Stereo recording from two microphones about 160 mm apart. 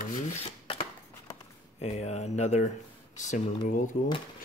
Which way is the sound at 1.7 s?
45° left (ahead or behind).